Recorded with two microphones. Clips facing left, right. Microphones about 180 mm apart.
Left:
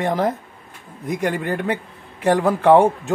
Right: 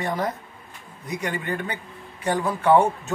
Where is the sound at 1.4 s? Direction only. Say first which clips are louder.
Left 6 dB; 65° left (ahead or behind).